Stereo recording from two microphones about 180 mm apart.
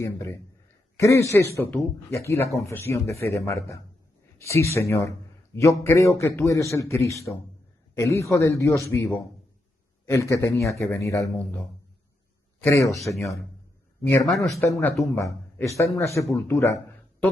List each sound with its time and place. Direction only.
0.9 s a man's voice: 15° left (ahead or behind)
11.2 s a man's voice: 5° left (ahead or behind)
12.9 s speech: centre (ahead or behind)
14.5 s a man's voice: 15° left (ahead or behind)